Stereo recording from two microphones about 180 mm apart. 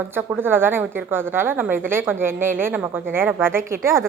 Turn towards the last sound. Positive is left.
turn(degrees=-15)  # may be behind; listen again after turning